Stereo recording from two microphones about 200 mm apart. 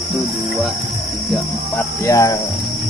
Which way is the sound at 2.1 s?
15° left (ahead or behind).